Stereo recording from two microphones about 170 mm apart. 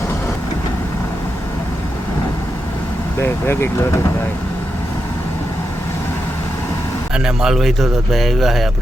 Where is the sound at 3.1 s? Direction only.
15° left (ahead or behind).